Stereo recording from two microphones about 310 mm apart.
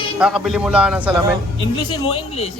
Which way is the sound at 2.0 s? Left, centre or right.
Centre.